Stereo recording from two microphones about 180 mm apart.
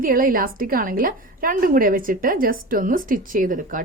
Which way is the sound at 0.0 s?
50° right (ahead or behind).